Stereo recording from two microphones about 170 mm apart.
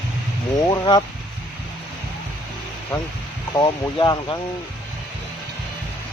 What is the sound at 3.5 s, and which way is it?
Speech, 25° left (ahead or behind).